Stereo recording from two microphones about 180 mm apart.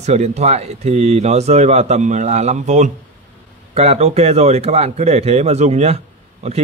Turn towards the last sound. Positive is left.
turn(degrees=-35)  # may be behind; listen again after turning